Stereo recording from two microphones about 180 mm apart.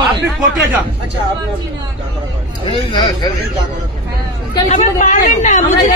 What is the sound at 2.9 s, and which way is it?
Speech, 25° left (ahead or behind).